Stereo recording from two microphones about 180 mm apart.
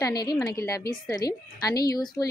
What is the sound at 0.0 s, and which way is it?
Speech, 20° left (ahead or behind).